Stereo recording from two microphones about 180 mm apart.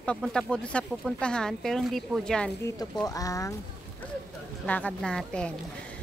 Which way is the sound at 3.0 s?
20° left (ahead or behind).